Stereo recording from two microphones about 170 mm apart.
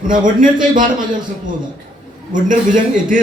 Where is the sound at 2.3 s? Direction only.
50° right (ahead or behind).